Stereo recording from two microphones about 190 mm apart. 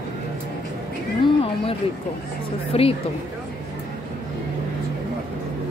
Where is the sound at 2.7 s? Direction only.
30° left (ahead or behind).